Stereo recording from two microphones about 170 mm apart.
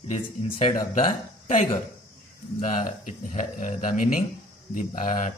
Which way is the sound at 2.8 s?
50° left (ahead or behind).